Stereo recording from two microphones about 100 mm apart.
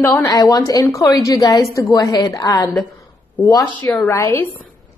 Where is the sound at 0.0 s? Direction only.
30° left (ahead or behind).